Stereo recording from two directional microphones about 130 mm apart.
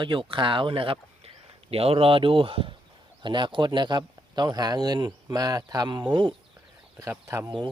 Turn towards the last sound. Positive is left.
turn(degrees=-20)  # may be behind; listen again after turning